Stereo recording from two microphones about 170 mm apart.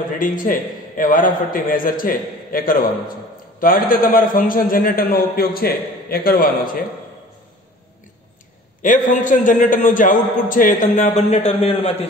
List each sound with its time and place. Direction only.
0.2 s a man's voice: 55° left (ahead or behind)
8.8 s a man's voice: 50° left (ahead or behind)